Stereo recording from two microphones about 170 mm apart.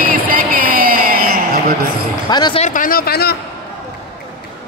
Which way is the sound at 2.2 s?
25° left (ahead or behind).